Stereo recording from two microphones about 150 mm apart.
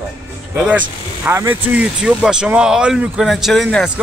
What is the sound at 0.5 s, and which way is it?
Speech, 10° right (ahead or behind).